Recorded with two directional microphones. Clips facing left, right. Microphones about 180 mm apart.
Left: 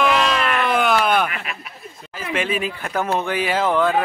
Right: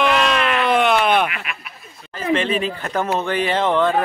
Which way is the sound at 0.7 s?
Centre (ahead or behind).